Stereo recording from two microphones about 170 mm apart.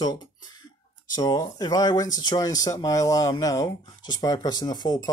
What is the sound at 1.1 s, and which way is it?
Speech, 20° left (ahead or behind).